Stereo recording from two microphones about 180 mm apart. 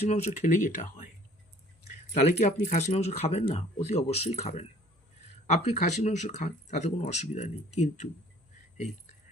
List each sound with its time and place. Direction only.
0.1 s speech: 40° left (ahead or behind)
2.1 s speech: 45° left (ahead or behind)